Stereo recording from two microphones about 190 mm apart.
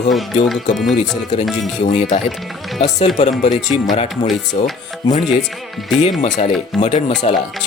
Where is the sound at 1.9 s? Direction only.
35° left (ahead or behind).